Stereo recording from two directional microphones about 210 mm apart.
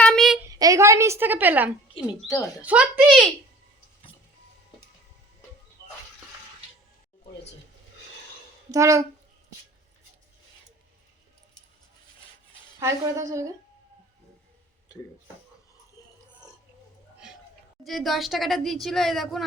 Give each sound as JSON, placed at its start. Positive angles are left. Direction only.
{"t": 0.0, "sound": "a sound", "side_deg": 0}
{"t": 0.5, "sound": "a woman's voice", "side_deg": -15}
{"t": 2.2, "sound": "a child's voice", "side_deg": 15}
{"t": 2.6, "sound": "a woman's voice", "side_deg": -5}
{"t": 8.7, "sound": "a woman's voice", "side_deg": -15}
{"t": 12.8, "sound": "a woman's voice", "side_deg": -15}
{"t": 17.8, "sound": "a woman's voice", "side_deg": 0}